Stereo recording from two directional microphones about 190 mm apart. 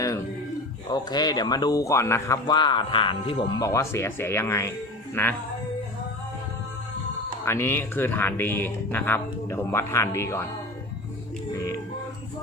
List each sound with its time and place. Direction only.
0.9 s speech: 20° left (ahead or behind)
7.4 s speech: 15° left (ahead or behind)
11.5 s a sound: 20° left (ahead or behind)